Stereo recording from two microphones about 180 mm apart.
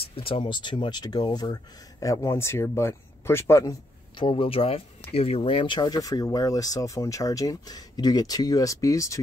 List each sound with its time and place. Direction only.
0.0 s speech: 30° left (ahead or behind); by 3.7 s 15° left (ahead or behind)
4.2 s speech: 30° left (ahead or behind)